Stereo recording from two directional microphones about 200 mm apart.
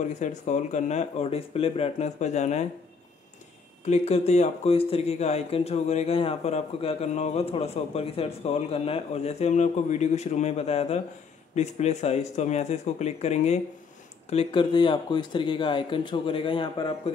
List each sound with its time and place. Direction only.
0.0 s speech: 35° left (ahead or behind)
3.8 s speech: 35° left (ahead or behind)